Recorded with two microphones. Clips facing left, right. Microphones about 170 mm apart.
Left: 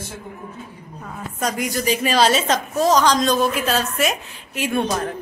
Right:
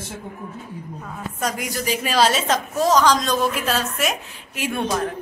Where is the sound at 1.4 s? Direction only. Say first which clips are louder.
Left 3 dB; 5° right (ahead or behind).